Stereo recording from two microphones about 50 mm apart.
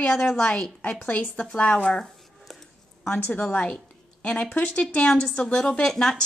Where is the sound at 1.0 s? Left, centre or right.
Left.